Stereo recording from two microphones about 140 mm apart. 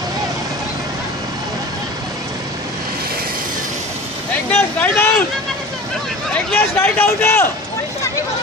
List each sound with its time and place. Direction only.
4.5 s speech: 15° left (ahead or behind)
6.3 s speech: 10° left (ahead or behind)